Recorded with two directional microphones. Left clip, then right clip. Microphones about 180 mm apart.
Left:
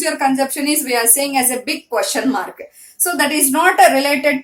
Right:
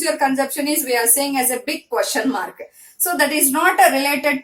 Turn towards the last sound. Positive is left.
turn(degrees=20)  # may be behind; listen again after turning